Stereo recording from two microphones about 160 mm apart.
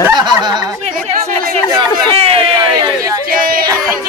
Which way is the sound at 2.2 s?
35° right (ahead or behind).